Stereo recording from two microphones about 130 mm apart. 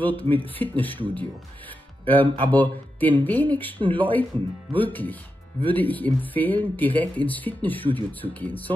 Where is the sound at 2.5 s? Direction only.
15° left (ahead or behind).